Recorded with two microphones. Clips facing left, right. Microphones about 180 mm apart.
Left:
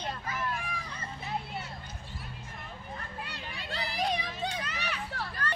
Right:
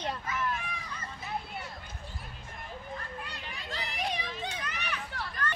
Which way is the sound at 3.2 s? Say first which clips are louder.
Left 1 dB; 30° left (ahead or behind).